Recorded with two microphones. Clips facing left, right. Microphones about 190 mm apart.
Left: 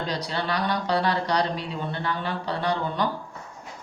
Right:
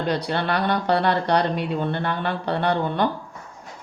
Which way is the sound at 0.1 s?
60° right (ahead or behind).